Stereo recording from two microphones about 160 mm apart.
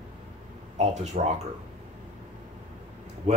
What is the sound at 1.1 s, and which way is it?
Speech, 50° right (ahead or behind).